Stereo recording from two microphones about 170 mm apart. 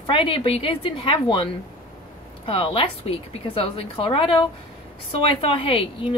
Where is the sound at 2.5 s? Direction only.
30° left (ahead or behind).